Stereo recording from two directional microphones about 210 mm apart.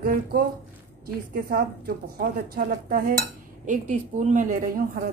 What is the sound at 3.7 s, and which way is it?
Speech, 35° right (ahead or behind).